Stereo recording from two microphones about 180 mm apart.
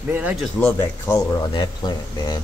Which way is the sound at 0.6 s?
10° left (ahead or behind).